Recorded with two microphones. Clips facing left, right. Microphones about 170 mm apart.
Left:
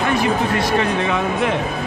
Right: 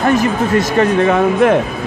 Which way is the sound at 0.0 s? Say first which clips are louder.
Right 4 dB; 45° right (ahead or behind).